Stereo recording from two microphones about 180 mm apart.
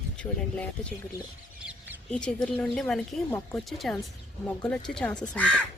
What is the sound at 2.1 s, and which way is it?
Speech, 5° left (ahead or behind).